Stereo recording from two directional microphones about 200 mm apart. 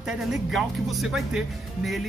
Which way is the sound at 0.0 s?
5° right (ahead or behind).